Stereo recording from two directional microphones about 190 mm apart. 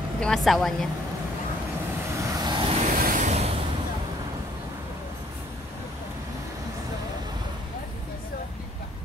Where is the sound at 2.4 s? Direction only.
25° right (ahead or behind).